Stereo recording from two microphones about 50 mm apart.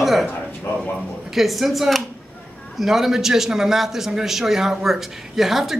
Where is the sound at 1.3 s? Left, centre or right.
Centre.